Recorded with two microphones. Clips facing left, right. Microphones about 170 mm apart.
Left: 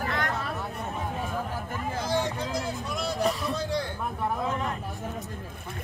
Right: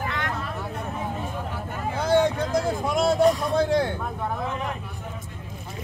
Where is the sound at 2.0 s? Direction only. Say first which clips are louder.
Right 9 dB; 60° right (ahead or behind).